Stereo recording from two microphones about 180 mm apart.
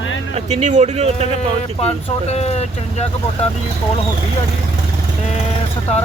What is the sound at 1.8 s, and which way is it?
Speech, 35° left (ahead or behind).